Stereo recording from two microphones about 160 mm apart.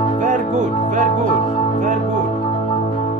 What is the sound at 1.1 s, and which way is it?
Speech, 35° left (ahead or behind).